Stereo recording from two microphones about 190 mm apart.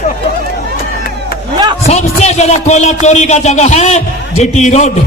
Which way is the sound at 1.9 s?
35° left (ahead or behind).